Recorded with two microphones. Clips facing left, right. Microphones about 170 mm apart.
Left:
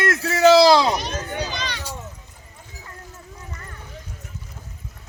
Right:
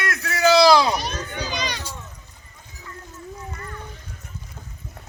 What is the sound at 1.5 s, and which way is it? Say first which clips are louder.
Speech: right 2 dB; 15° right (ahead or behind).